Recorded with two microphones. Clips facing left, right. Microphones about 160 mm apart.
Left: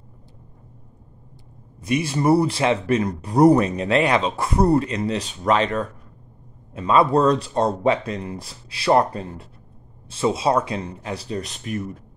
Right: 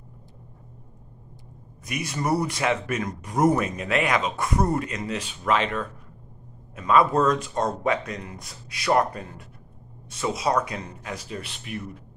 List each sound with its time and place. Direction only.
1.8 s speech: 30° left (ahead or behind)